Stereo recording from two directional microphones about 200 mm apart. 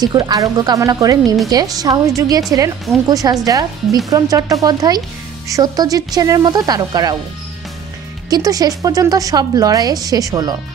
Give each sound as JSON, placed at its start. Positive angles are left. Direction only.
{"t": 0.0, "sound": "a woman's voice", "side_deg": -20}
{"t": 8.3, "sound": "a woman's voice", "side_deg": -15}